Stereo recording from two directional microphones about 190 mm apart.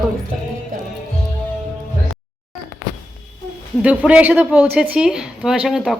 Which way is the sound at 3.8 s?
5° right (ahead or behind).